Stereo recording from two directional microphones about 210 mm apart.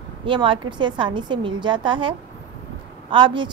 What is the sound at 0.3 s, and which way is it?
A woman's voice, 25° right (ahead or behind).